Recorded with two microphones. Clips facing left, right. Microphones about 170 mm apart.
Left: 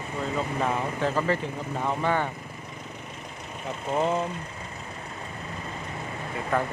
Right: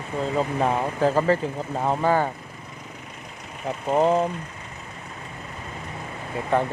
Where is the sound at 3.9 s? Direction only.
35° right (ahead or behind).